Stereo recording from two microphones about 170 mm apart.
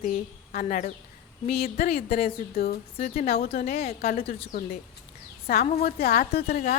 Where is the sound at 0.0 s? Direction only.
50° left (ahead or behind).